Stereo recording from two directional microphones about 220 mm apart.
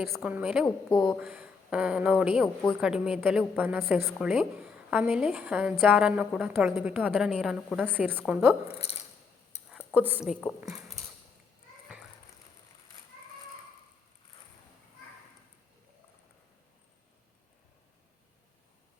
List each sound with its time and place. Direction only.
0.0 s a woman's voice: centre (ahead or behind)
8.8 s a sound: 25° left (ahead or behind)
9.6 s speech: 5° right (ahead or behind)